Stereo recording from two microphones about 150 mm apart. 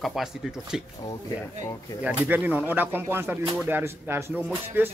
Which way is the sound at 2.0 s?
10° right (ahead or behind).